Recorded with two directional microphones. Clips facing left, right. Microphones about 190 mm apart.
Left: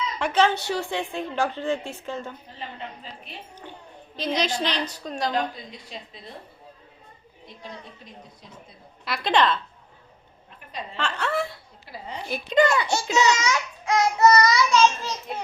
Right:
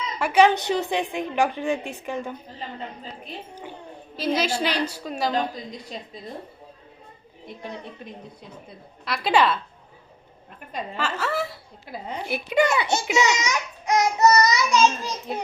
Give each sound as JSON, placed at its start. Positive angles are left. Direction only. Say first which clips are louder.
{"t": 0.2, "sound": "a child's voice", "louder": "right 4 dB", "side_deg": -10}
{"t": 4.2, "sound": "a child's voice", "louder": "right 2 dB", "side_deg": -5}
{"t": 9.0, "sound": "speech", "louder": "right 1 dB", "side_deg": 0}
{"t": 10.9, "sound": "chuckle", "louder": "even", "side_deg": -5}
{"t": 12.3, "sound": "a child's voice", "louder": "left 1 dB", "side_deg": -10}